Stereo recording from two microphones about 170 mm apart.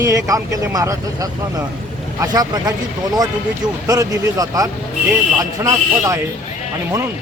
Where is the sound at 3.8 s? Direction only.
20° right (ahead or behind).